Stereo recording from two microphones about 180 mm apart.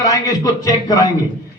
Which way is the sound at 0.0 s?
20° left (ahead or behind).